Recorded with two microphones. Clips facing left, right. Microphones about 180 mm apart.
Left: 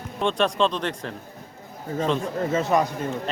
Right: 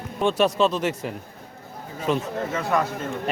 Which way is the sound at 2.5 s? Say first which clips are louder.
Left 3 dB; 20° left (ahead or behind).